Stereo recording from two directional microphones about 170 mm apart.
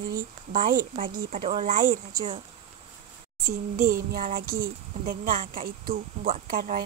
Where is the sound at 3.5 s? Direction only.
55° right (ahead or behind).